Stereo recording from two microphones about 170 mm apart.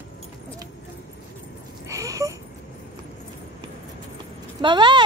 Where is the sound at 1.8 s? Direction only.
20° right (ahead or behind).